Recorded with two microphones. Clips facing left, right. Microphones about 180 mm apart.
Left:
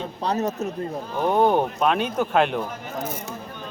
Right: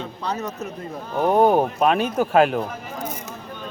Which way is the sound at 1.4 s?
5° right (ahead or behind).